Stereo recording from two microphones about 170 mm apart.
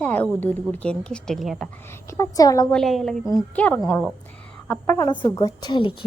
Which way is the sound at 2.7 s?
Centre (ahead or behind).